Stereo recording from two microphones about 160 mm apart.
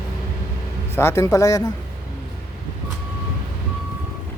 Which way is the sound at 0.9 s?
15° left (ahead or behind).